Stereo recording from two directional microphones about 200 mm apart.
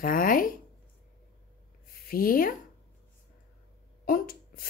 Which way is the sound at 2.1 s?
45° left (ahead or behind).